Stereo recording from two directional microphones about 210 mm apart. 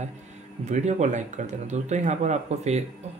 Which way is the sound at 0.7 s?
35° right (ahead or behind).